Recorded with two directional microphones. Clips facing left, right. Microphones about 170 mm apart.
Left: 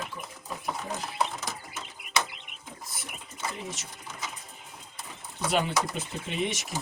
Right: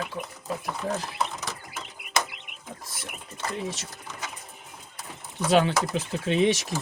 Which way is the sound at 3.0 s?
90° right.